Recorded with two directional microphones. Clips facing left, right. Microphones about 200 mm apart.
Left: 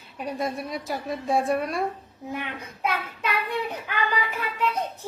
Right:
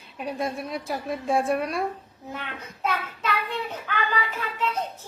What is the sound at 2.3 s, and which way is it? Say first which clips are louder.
A child's voice: left 3 dB; 15° left (ahead or behind).